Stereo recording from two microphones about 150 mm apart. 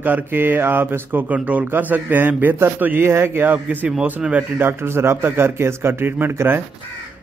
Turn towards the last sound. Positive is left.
turn(degrees=-15)  # may be behind; listen again after turning